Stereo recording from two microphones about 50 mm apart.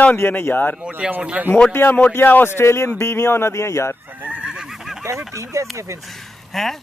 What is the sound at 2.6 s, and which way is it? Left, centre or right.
Speech, left.